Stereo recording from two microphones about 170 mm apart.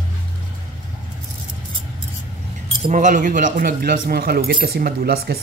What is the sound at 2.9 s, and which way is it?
A man's voice, 50° right (ahead or behind).